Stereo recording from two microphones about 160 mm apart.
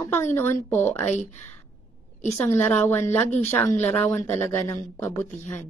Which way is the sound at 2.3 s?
10° left (ahead or behind).